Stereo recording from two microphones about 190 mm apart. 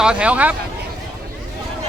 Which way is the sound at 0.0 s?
5° right (ahead or behind).